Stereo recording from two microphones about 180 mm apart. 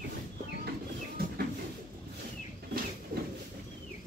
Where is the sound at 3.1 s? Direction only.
55° right (ahead or behind).